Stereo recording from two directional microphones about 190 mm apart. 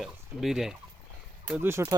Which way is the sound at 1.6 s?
15° right (ahead or behind).